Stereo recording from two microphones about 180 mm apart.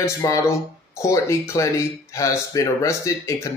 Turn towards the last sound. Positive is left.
turn(degrees=15)  # may be behind; listen again after turning